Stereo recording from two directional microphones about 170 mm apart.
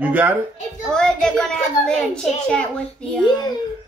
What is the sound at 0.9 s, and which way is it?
A child's voice, 5° left (ahead or behind).